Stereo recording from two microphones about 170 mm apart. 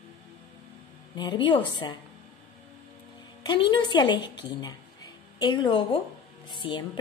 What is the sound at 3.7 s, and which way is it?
A woman's voice, 30° left (ahead or behind).